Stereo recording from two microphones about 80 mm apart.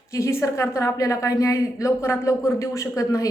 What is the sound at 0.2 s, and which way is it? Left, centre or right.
A woman's voice, left.